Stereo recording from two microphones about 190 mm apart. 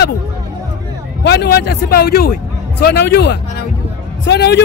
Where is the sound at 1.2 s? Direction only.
60° left (ahead or behind).